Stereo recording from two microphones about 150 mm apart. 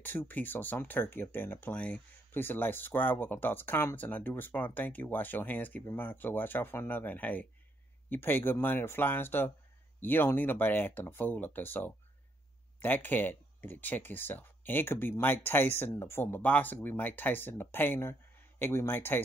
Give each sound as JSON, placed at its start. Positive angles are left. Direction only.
{"t": 0.0, "sound": "speech", "side_deg": 15}